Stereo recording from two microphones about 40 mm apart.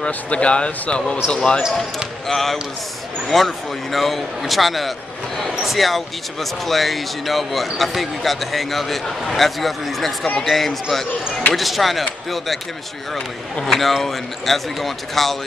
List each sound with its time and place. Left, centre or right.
0.0 s speech: left
2.2 s a man's voice: centre
13.7 s a man's voice: centre